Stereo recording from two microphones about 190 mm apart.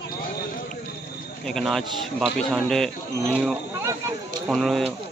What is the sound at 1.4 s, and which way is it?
Speech, centre (ahead or behind).